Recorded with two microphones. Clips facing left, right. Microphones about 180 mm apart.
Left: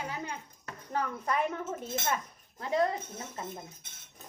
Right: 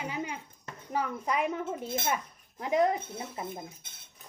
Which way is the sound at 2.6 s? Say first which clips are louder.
Right 3 dB; 15° right (ahead or behind).